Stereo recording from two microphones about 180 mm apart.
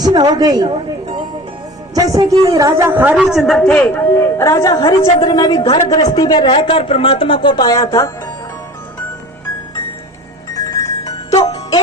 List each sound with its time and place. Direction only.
0.0 s a woman's voice: 20° right (ahead or behind)
2.0 s a man's voice: 20° right (ahead or behind); by 8.1 s 20° left (ahead or behind)
10.5 s music: 20° left (ahead or behind)
11.3 s music: 35° left (ahead or behind)